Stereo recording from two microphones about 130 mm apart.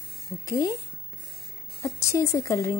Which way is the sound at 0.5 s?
25° left (ahead or behind).